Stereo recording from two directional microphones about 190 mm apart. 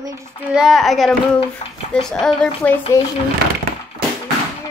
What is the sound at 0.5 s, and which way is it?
A child's voice, centre (ahead or behind).